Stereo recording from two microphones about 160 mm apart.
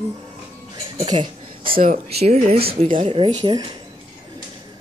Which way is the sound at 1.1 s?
60° right (ahead or behind).